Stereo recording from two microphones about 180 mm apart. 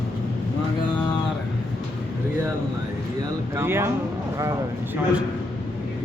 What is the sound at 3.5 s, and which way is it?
Speech, 15° right (ahead or behind).